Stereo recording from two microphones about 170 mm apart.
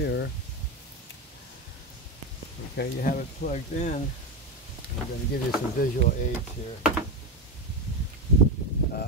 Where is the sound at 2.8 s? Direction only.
55° left (ahead or behind).